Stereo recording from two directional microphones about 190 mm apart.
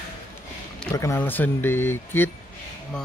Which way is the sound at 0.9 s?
15° left (ahead or behind).